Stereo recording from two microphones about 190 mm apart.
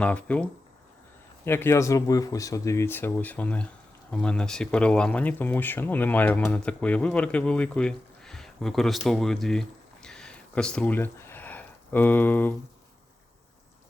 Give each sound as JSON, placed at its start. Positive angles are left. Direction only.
{"t": 0.0, "sound": "speech", "side_deg": 5}
{"t": 1.5, "sound": "speech", "side_deg": 10}